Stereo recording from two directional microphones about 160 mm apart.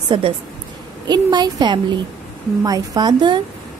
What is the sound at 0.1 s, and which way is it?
A woman's voice, 30° right (ahead or behind).